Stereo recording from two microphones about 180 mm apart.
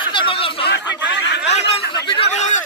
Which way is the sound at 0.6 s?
75° left (ahead or behind).